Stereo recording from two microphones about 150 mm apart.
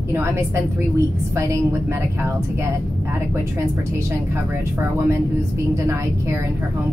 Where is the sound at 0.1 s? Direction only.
15° right (ahead or behind).